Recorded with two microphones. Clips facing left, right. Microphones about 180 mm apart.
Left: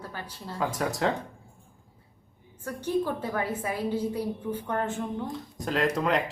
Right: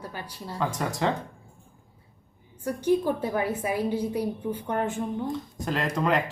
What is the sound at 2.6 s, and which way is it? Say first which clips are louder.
A woman's voice: right 4 dB; 15° right (ahead or behind).